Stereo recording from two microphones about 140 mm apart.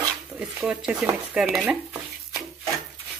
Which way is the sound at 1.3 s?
5° right (ahead or behind).